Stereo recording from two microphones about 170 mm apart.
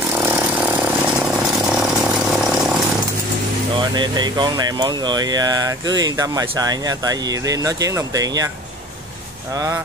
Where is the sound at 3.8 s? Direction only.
25° right (ahead or behind).